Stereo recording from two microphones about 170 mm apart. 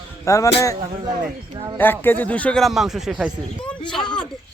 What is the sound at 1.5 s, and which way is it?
Speech, 25° right (ahead or behind).